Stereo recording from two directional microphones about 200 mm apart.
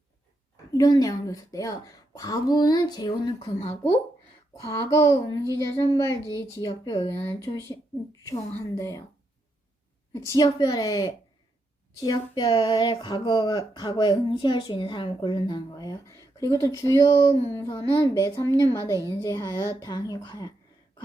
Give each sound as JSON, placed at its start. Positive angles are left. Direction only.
{"t": 0.5, "sound": "a woman's voice", "side_deg": 20}
{"t": 4.6, "sound": "a woman's voice", "side_deg": 15}
{"t": 10.3, "sound": "a woman's voice", "side_deg": 20}